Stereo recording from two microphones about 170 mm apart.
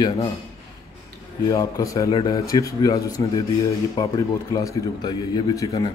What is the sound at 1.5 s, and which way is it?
Speech, 20° left (ahead or behind).